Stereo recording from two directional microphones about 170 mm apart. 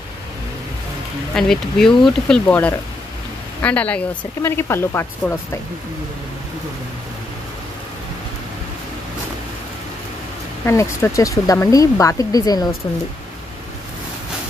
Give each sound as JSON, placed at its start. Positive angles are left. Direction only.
{"t": 1.3, "sound": "speech", "side_deg": 5}
{"t": 10.6, "sound": "speech", "side_deg": 15}